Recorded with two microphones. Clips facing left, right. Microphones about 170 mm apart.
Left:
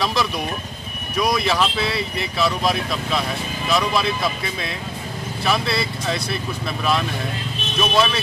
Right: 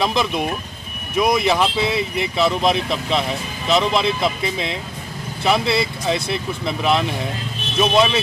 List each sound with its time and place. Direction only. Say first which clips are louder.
0.0 s speech: right 3 dB; 20° right (ahead or behind)